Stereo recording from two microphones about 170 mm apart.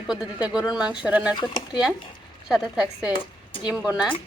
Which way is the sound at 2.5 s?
5° right (ahead or behind).